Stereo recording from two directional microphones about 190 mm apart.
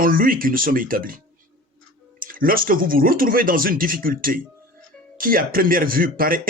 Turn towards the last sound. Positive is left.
turn(degrees=-50)  # may be behind; listen again after turning